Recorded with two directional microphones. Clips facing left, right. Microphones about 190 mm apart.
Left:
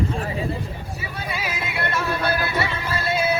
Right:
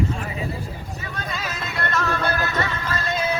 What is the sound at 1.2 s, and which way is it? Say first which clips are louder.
Music: left 2 dB; 10° left (ahead or behind).